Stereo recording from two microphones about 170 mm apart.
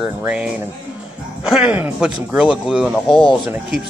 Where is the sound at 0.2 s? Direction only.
5° right (ahead or behind).